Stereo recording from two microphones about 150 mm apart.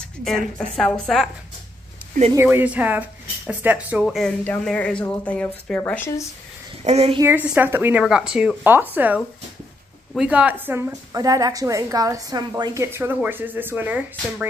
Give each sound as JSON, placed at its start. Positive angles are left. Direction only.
{"t": 0.7, "sound": "a woman's voice", "side_deg": 5}
{"t": 2.3, "sound": "speech", "side_deg": -15}
{"t": 4.5, "sound": "speech", "side_deg": 10}
{"t": 6.8, "sound": "speech", "side_deg": -45}
{"t": 7.2, "sound": "speech", "side_deg": -15}
{"t": 10.9, "sound": "a woman's voice", "side_deg": -25}